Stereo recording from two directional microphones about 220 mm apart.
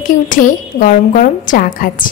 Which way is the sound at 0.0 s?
35° left (ahead or behind).